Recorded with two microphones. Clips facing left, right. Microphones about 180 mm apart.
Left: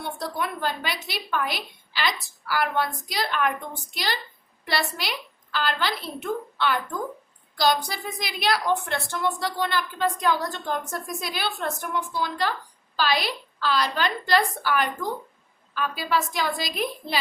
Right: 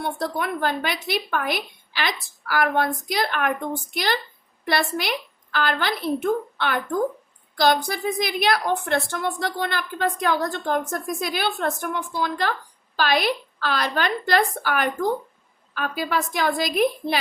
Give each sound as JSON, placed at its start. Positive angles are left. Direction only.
{"t": 0.0, "sound": "a woman's voice", "side_deg": -55}